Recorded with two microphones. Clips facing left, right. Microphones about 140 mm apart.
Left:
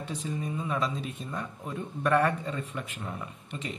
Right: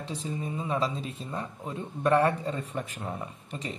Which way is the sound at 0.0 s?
25° right (ahead or behind).